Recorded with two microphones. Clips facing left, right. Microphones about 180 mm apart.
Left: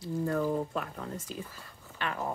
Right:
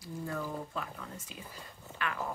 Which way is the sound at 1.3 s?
40° left (ahead or behind).